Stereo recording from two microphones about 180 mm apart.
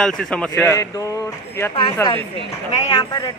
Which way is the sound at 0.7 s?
20° left (ahead or behind).